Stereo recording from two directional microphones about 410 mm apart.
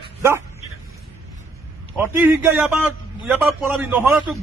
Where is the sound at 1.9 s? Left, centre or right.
Centre.